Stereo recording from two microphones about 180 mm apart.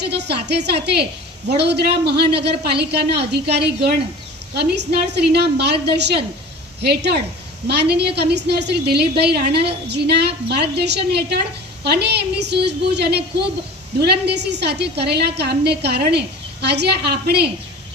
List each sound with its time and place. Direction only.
0.1 s a woman's voice: 70° right (ahead or behind)